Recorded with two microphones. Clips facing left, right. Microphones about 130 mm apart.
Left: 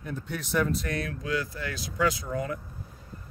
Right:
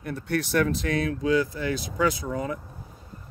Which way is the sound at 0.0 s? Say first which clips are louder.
Right 7 dB; 70° right (ahead or behind).